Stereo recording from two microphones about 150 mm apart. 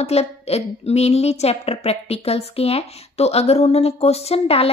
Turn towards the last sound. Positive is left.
turn(degrees=45)  # may be behind; listen again after turning